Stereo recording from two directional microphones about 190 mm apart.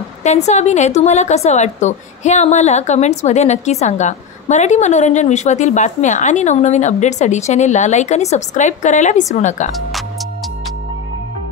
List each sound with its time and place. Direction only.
0.2 s a woman's voice: 35° left (ahead or behind)